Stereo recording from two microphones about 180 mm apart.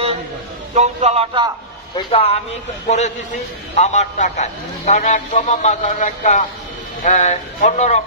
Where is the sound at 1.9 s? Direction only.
30° left (ahead or behind).